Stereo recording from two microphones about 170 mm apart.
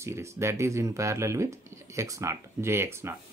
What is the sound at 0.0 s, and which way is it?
Speech, 15° right (ahead or behind).